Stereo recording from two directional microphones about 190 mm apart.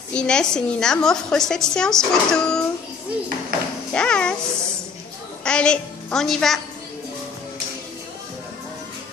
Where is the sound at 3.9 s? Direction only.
5° left (ahead or behind).